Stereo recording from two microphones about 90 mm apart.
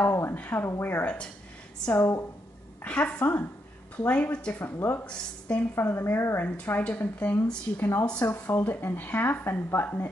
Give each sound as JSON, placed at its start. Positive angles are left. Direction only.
{"t": 0.0, "sound": "a woman's voice", "side_deg": 20}
{"t": 2.0, "sound": "a woman's voice", "side_deg": 25}
{"t": 2.8, "sound": "a woman's voice", "side_deg": 15}
{"t": 5.0, "sound": "a woman's voice", "side_deg": 10}
{"t": 5.8, "sound": "a woman's voice", "side_deg": 25}